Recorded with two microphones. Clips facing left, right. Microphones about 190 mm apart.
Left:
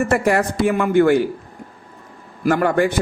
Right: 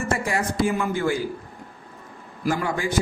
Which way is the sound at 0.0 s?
65° left (ahead or behind).